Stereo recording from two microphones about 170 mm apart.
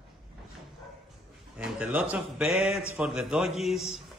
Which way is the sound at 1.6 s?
5° right (ahead or behind).